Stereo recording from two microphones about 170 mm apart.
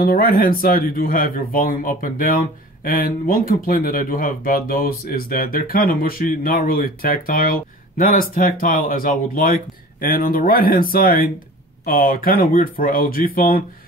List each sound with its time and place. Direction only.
0.0 s speech: 60° left (ahead or behind)